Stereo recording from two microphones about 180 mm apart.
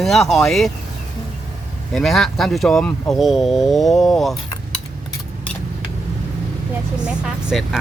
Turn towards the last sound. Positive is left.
turn(degrees=0)  # may be behind; listen again after turning